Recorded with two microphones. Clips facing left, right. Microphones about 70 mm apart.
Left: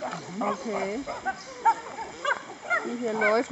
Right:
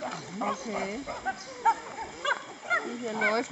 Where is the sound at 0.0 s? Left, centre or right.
Centre.